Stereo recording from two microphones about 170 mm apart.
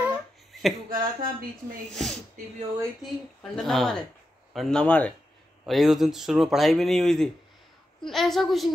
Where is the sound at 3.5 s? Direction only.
Centre (ahead or behind).